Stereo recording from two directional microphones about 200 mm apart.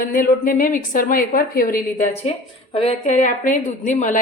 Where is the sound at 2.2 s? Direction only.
30° left (ahead or behind).